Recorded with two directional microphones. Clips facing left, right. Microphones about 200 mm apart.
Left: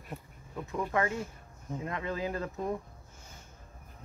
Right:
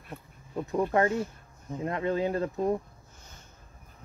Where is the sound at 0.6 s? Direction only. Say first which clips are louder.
Right 6 dB; 35° right (ahead or behind).